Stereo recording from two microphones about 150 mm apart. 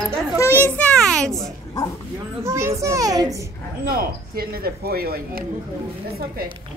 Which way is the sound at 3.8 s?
80° right.